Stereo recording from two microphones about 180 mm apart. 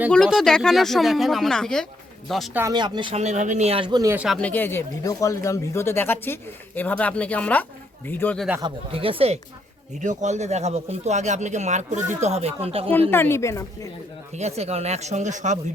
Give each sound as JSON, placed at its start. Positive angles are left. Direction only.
{"t": 0.1, "sound": "speech", "side_deg": 0}
{"t": 2.6, "sound": "speech", "side_deg": -20}
{"t": 4.1, "sound": "speech", "side_deg": -5}
{"t": 4.4, "sound": "speech", "side_deg": 10}
{"t": 8.6, "sound": "speech", "side_deg": -30}
{"t": 10.0, "sound": "speech", "side_deg": -40}
{"t": 13.1, "sound": "speech", "side_deg": 10}
{"t": 14.3, "sound": "speech", "side_deg": -40}